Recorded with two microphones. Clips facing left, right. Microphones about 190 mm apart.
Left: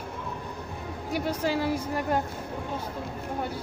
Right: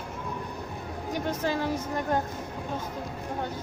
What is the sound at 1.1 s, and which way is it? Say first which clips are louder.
Speech: left 2 dB; 10° left (ahead or behind).